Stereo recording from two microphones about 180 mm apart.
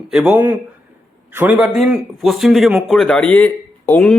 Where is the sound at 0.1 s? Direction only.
5° right (ahead or behind).